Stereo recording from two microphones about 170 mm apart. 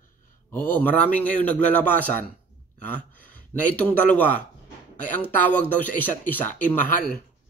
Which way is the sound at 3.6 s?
10° left (ahead or behind).